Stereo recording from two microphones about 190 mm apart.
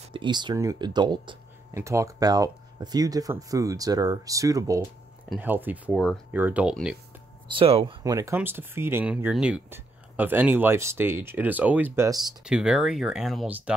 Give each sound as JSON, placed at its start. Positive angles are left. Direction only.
{"t": 0.0, "sound": "speech", "side_deg": -25}
{"t": 7.4, "sound": "speech", "side_deg": -30}
{"t": 12.4, "sound": "speech", "side_deg": -5}